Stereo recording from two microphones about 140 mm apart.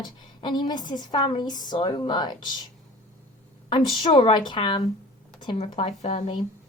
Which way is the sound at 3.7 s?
35° left (ahead or behind).